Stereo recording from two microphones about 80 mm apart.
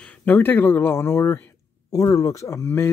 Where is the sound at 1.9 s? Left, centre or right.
Left.